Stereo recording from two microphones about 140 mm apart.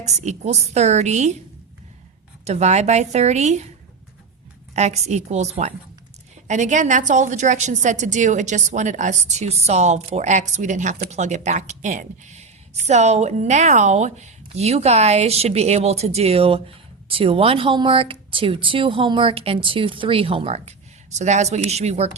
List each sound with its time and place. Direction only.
0.0 s a woman's voice: 55° right (ahead or behind)
2.4 s a woman's voice: 50° right (ahead or behind)
4.7 s a woman's voice: 55° right (ahead or behind)